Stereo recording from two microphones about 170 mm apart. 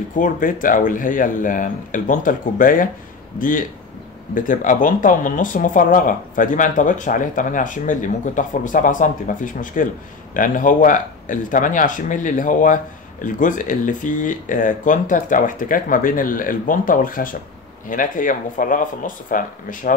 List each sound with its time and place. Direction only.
0.1 s speech: 50° left (ahead or behind)